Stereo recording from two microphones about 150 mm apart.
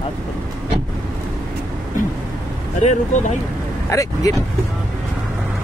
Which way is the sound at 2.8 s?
50° left (ahead or behind).